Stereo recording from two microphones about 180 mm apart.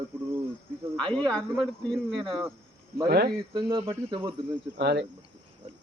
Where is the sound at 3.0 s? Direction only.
60° right (ahead or behind).